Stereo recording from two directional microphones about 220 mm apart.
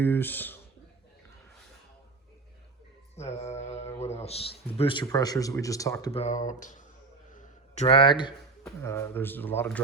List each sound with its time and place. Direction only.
0.0 s speech: 10° left (ahead or behind)
3.2 s a man's voice: 30° left (ahead or behind)
6.1 s speech: 30° left (ahead or behind)
7.3 s a sound: 30° left (ahead or behind)
8.6 s speech: 10° left (ahead or behind)